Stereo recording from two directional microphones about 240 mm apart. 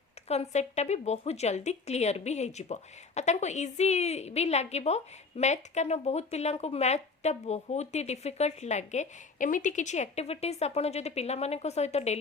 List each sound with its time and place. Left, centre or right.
0.3 s a woman's voice: left